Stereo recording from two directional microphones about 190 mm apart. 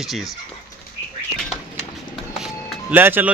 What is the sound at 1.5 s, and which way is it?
Bird, 35° left (ahead or behind).